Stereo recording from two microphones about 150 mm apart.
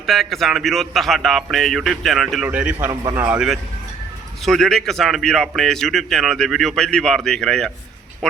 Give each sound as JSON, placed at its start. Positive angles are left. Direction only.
{"t": 0.0, "sound": "speech", "side_deg": 0}
{"t": 2.9, "sound": "a man's voice", "side_deg": -25}
{"t": 3.2, "sound": "speech", "side_deg": -5}